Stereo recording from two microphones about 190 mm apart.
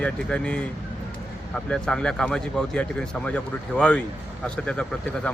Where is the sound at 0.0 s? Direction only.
5° left (ahead or behind).